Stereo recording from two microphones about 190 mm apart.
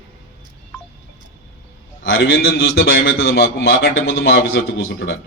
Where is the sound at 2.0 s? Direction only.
55° left (ahead or behind).